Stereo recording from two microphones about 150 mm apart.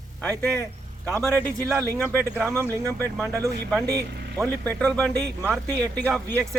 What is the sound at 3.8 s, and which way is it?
Speech, 90° right.